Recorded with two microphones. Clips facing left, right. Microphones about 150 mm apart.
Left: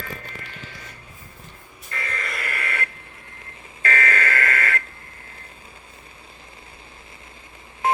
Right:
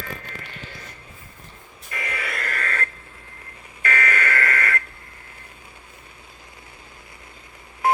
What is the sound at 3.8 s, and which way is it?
Fire alarm, 30° left (ahead or behind).